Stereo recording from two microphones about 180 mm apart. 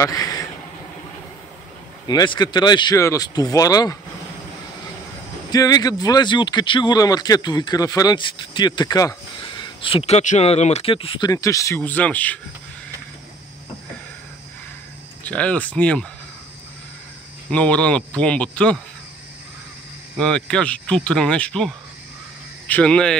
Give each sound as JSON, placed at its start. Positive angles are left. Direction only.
{"t": 0.0, "sound": "a sound", "side_deg": 20}
{"t": 2.0, "sound": "speech", "side_deg": 25}
{"t": 5.5, "sound": "speech", "side_deg": 20}
{"t": 15.2, "sound": "speech", "side_deg": 5}
{"t": 17.5, "sound": "speech", "side_deg": 5}
{"t": 20.2, "sound": "speech", "side_deg": 5}